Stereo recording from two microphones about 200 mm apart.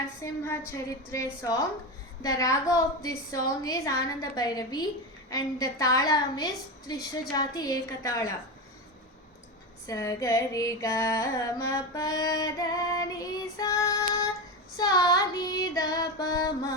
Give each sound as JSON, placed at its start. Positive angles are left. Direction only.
{"t": 0.2, "sound": "music", "side_deg": 10}
{"t": 9.8, "sound": "music", "side_deg": 15}
{"t": 14.8, "sound": "female singing", "side_deg": 20}